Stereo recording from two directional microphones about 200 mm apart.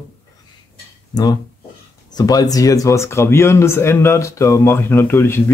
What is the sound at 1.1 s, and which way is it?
Speech, 20° left (ahead or behind).